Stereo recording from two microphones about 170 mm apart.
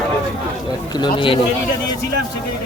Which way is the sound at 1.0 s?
30° left (ahead or behind).